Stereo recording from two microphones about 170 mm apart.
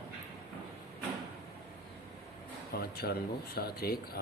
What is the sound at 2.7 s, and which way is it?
Speech, 65° left (ahead or behind).